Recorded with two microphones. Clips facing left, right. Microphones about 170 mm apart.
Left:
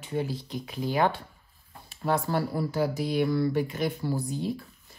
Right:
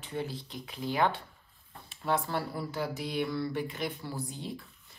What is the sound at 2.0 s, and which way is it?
Speech, 40° left (ahead or behind).